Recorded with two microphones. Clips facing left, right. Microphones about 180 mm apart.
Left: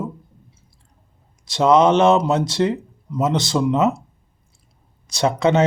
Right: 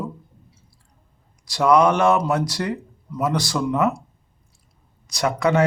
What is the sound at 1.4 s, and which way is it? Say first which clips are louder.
Speech: left 2 dB; 25° left (ahead or behind).